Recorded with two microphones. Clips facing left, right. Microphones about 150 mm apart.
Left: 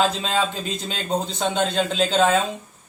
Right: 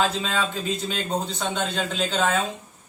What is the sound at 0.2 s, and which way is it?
Speech, 25° left (ahead or behind).